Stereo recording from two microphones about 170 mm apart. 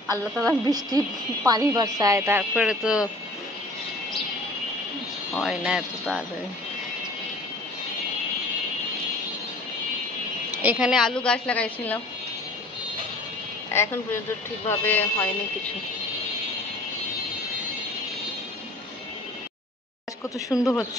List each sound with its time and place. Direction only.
0.7 s speech: 25° right (ahead or behind); by 3.1 s 5° right (ahead or behind)
5.4 s a woman's voice: 5° right (ahead or behind)
10.5 s a woman's voice: 10° right (ahead or behind); by 12.0 s 10° left (ahead or behind)
14.7 s speech: 10° left (ahead or behind)
20.3 s speech: 20° left (ahead or behind)